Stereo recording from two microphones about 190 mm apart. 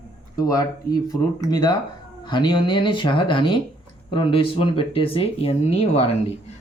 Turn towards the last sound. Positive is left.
turn(degrees=30)  # may be behind; listen again after turning